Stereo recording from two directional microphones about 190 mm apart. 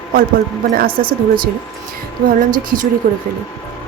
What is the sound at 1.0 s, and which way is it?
Speech, 25° right (ahead or behind).